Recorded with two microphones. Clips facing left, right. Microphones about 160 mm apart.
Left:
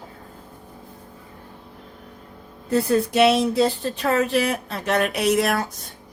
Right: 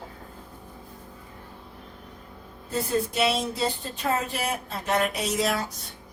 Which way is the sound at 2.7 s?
70° left (ahead or behind).